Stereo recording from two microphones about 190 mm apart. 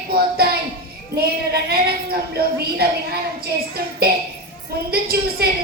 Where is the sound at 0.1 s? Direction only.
55° right (ahead or behind).